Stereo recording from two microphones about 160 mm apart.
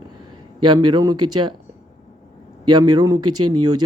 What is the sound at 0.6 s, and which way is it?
Speech, 30° right (ahead or behind).